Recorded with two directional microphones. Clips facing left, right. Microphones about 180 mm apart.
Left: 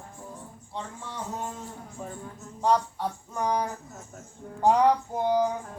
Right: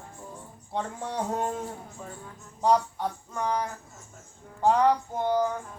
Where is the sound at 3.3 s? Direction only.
15° left (ahead or behind).